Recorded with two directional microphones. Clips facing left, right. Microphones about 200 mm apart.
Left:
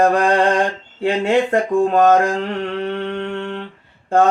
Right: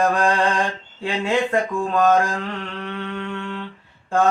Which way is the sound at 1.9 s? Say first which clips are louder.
Left 3 dB; 45° left (ahead or behind).